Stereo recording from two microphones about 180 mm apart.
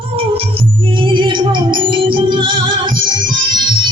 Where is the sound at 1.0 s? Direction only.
25° right (ahead or behind).